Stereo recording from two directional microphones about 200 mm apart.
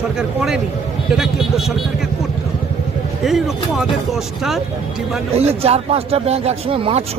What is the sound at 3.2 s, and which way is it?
Speech, centre (ahead or behind).